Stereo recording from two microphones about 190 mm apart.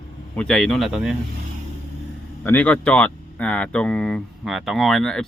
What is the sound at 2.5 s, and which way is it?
Speech, 10° left (ahead or behind).